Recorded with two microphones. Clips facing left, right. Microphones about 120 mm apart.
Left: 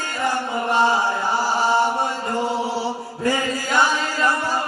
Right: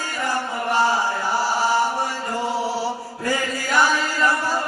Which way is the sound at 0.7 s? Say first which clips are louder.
Left 1 dB; 20° left (ahead or behind).